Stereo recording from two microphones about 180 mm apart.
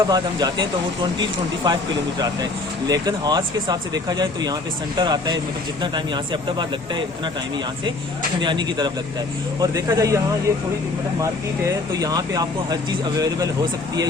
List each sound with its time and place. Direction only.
0.0 s speech: 20° right (ahead or behind)
8.4 s speech: 25° right (ahead or behind)
11.2 s speech: 20° right (ahead or behind)